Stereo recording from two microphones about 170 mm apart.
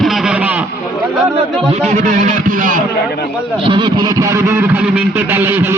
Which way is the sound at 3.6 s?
30° right (ahead or behind).